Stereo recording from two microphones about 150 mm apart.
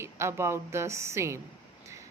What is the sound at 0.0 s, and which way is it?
A woman's voice, 15° right (ahead or behind).